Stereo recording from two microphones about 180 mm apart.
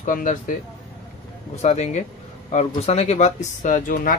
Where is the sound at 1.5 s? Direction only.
35° left (ahead or behind).